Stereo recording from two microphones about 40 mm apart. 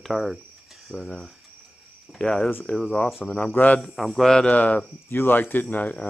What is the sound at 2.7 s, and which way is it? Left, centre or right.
Speech, left.